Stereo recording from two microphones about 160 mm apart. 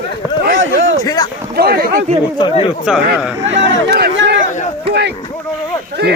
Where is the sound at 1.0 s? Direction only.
25° left (ahead or behind).